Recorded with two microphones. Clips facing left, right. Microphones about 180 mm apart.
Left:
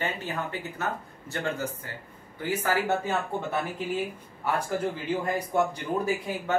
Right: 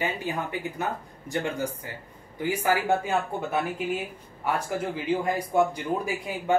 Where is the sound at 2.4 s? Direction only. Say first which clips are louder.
Right 2 dB; 15° right (ahead or behind).